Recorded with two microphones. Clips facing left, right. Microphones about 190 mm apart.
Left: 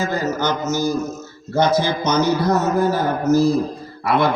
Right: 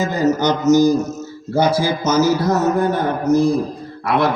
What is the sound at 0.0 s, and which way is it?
A man's voice, 15° right (ahead or behind).